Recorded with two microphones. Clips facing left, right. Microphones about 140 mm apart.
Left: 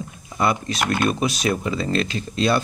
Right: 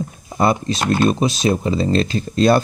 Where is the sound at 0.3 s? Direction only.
35° right (ahead or behind).